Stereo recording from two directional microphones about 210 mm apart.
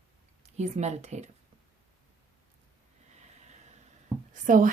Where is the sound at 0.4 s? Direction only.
30° right (ahead or behind).